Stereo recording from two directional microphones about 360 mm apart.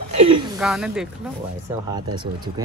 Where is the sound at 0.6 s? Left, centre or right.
Centre.